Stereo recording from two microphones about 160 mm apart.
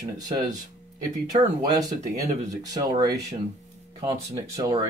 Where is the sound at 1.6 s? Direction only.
25° right (ahead or behind).